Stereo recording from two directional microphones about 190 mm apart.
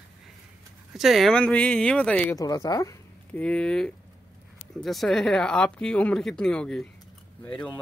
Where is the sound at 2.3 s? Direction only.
20° left (ahead or behind).